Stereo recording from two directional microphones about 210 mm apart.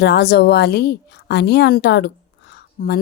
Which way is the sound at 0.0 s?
50° left (ahead or behind).